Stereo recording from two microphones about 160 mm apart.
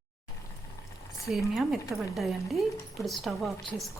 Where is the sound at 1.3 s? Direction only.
Centre (ahead or behind).